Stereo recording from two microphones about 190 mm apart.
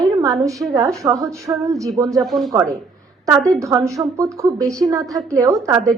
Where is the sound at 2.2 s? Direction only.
Centre (ahead or behind).